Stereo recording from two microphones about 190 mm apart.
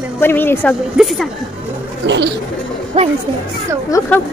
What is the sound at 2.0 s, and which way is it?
Speech, 70° right (ahead or behind).